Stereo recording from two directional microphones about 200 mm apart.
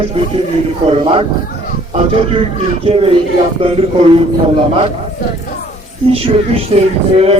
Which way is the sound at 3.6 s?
30° right (ahead or behind).